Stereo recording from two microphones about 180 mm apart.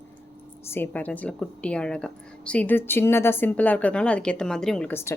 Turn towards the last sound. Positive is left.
turn(degrees=10)  # may be behind; listen again after turning